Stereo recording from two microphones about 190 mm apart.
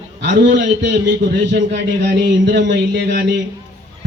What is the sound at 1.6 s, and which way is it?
Speech, 65° right (ahead or behind).